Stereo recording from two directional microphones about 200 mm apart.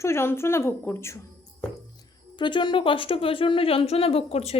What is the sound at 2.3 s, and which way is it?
A woman's voice, 25° left (ahead or behind).